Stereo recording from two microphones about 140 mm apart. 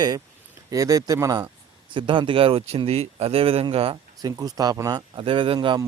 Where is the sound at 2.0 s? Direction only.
35° right (ahead or behind).